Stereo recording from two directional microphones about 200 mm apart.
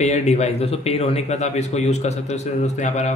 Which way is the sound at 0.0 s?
35° left (ahead or behind).